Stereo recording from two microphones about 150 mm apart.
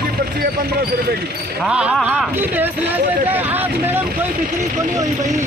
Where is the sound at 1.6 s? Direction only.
5° right (ahead or behind).